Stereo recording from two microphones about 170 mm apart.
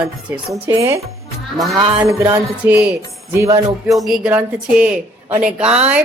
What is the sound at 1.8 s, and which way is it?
Mantra, 25° right (ahead or behind).